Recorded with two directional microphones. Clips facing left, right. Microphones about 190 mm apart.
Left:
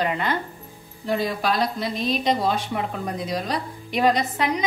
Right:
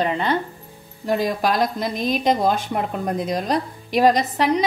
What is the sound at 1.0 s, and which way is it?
A woman's voice, 45° right (ahead or behind).